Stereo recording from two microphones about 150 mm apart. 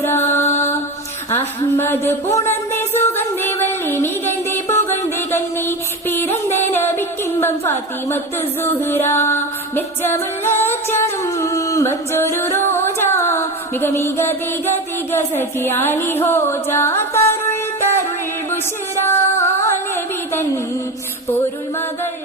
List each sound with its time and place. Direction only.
0.0 s music: 15° left (ahead or behind)
1.3 s a sound: 15° left (ahead or behind)
15.1 s music: 15° left (ahead or behind)
19.0 s music: 15° left (ahead or behind)